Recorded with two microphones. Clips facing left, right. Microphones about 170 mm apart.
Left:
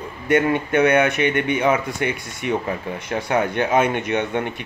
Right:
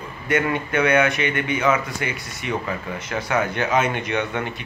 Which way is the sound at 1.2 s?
55° left (ahead or behind).